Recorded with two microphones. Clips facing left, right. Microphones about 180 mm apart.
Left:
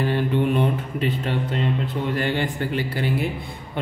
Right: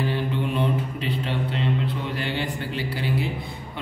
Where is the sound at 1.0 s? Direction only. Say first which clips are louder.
Left 6 dB; 50° left (ahead or behind).